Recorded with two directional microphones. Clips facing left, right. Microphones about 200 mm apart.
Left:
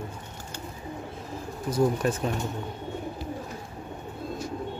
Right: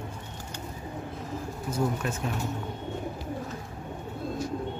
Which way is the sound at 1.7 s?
35° left (ahead or behind).